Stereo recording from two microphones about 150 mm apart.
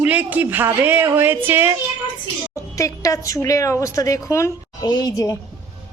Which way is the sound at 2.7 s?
20° left (ahead or behind).